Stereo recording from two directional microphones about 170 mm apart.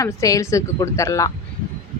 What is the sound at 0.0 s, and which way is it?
A woman's voice, 20° left (ahead or behind).